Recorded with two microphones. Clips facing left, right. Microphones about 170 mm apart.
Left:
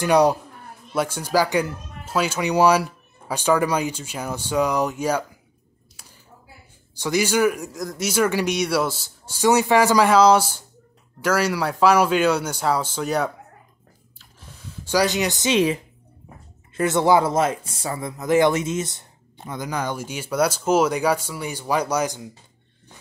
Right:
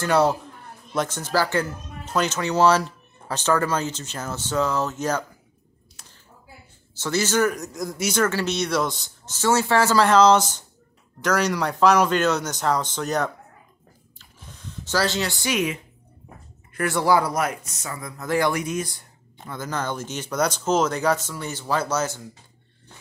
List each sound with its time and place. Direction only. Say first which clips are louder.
0.0 s speech: left 3 dB; 15° left (ahead or behind)
7.0 s speech: left 2 dB; 15° left (ahead or behind)
7.8 s speech: even; centre (ahead or behind)
8.2 s speech: left 3 dB; 15° left (ahead or behind)
14.1 s a sound: even; 5° left (ahead or behind); by 15.8 s 30° left (ahead or behind)
16.7 s speech: left 3 dB; 20° left (ahead or behind)